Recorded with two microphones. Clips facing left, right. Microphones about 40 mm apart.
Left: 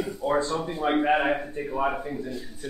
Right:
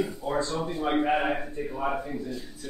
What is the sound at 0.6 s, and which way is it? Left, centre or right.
Speech, centre.